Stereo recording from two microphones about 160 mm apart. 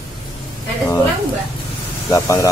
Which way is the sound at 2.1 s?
20° left (ahead or behind).